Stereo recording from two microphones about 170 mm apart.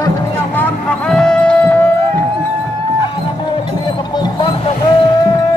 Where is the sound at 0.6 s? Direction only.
5° left (ahead or behind).